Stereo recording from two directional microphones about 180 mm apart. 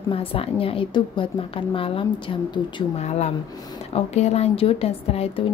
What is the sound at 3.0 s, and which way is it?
A woman's voice, 40° left (ahead or behind).